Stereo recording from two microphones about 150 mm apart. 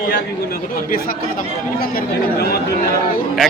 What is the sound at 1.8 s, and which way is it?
Speech, 85° left.